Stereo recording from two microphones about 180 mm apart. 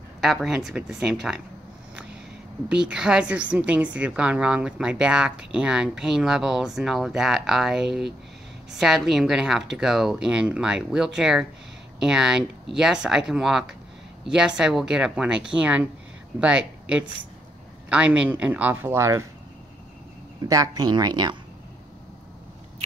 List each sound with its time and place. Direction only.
0.2 s a woman's voice: centre (ahead or behind)
2.7 s a woman's voice: 5° right (ahead or behind)
17.8 s a man's voice: 5° right (ahead or behind)
20.4 s speech: 20° right (ahead or behind)